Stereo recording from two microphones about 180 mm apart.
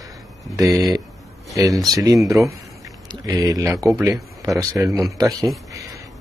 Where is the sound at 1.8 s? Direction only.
20° right (ahead or behind).